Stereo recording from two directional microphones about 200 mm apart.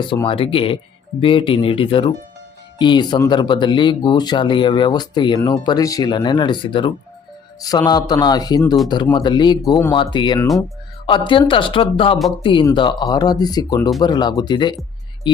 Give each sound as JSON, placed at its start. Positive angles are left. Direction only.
{"t": 0.3, "sound": "speech", "side_deg": 25}